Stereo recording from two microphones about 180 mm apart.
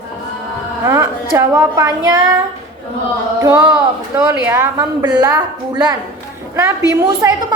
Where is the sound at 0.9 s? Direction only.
15° right (ahead or behind).